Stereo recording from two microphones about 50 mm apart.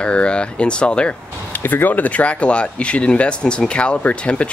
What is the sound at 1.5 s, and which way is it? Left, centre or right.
Speech, left.